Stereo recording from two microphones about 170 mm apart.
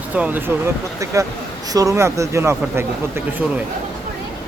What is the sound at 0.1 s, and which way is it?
Speech, 10° right (ahead or behind).